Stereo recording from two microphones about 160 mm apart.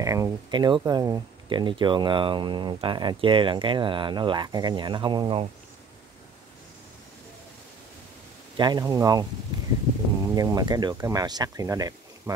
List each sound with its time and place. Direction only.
0.0 s speech: 20° right (ahead or behind)
8.5 s speech: 25° right (ahead or behind)
10.3 s speech: 25° right (ahead or behind)